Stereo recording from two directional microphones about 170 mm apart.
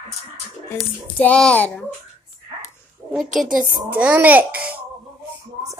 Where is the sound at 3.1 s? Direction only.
Centre (ahead or behind).